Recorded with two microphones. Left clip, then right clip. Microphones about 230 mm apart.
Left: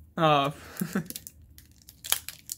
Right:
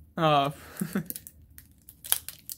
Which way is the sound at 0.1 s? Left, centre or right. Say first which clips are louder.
Left 1 dB; centre.